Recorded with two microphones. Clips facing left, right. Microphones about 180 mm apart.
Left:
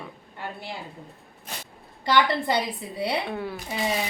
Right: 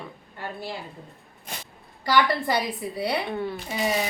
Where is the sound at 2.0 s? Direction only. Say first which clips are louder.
Even; 25° left (ahead or behind).